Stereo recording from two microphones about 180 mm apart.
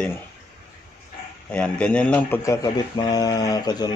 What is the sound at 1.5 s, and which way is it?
Speech, 5° left (ahead or behind).